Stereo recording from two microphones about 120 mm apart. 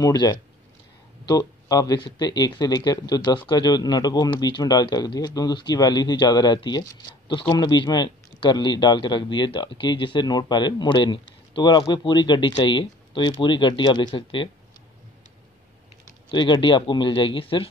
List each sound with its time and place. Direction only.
0.0 s speech: 35° left (ahead or behind)
16.3 s speech: 40° left (ahead or behind)